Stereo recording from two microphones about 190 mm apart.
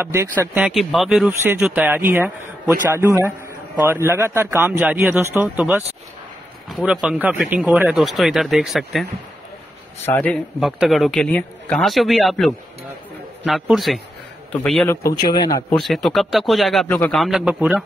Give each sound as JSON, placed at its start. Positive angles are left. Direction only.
{"t": 0.0, "sound": "a man's voice", "side_deg": -15}
{"t": 10.1, "sound": "a man's voice", "side_deg": 10}
{"t": 15.0, "sound": "a man's voice", "side_deg": 20}
{"t": 15.7, "sound": "speech", "side_deg": 0}